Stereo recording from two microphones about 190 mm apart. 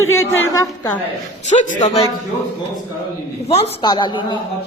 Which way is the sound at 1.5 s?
40° left (ahead or behind).